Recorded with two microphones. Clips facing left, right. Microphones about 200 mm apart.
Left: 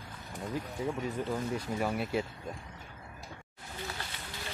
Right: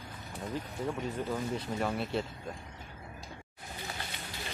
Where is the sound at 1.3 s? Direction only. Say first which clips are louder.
Left 1 dB; 5° left (ahead or behind).